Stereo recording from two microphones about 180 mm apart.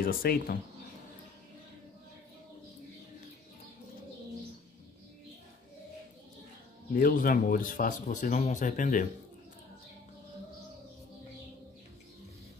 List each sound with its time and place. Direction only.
0.0 s speech: 55° left (ahead or behind)
7.0 s speech: 50° left (ahead or behind)